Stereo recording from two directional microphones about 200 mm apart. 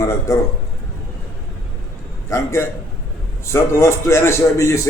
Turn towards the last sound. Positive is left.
turn(degrees=15)  # may be behind; listen again after turning